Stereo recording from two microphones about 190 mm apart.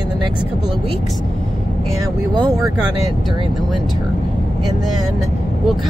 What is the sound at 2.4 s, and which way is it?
Speech, centre (ahead or behind).